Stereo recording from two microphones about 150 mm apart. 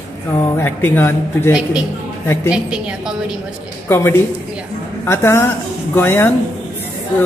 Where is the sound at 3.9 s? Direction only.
15° left (ahead or behind).